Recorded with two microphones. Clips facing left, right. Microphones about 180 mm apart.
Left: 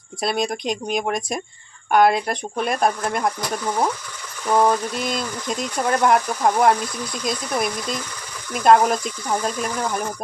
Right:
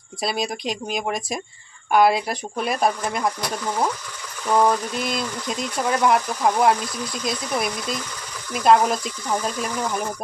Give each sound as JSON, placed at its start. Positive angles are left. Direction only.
{"t": 0.2, "sound": "speech", "side_deg": 0}
{"t": 4.4, "sound": "speech", "side_deg": 5}